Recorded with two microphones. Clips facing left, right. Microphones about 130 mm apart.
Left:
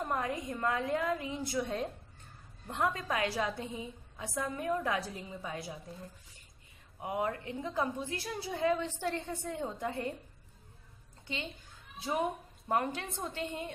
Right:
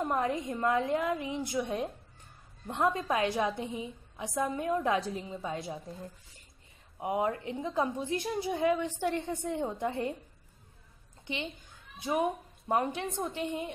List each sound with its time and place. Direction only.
0.0 s a woman's voice: 20° right (ahead or behind)
7.0 s a woman's voice: 20° right (ahead or behind)
11.2 s a woman's voice: 15° right (ahead or behind)